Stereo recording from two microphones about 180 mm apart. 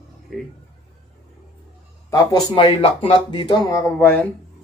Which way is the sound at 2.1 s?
20° left (ahead or behind).